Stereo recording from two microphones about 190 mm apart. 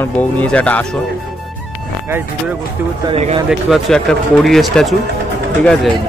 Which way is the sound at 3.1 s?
35° right (ahead or behind).